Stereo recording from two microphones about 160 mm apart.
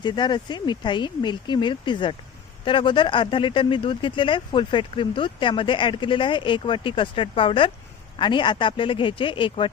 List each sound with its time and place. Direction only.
0.0 s speech: 30° left (ahead or behind)